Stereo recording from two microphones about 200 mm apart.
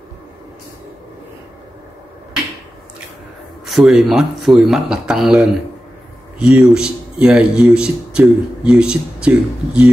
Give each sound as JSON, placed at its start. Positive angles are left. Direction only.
{"t": 3.6, "sound": "speech", "side_deg": 0}